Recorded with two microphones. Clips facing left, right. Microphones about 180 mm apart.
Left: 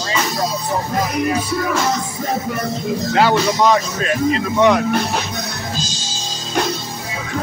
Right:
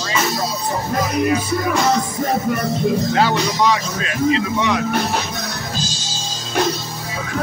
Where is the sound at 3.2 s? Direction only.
50° left (ahead or behind).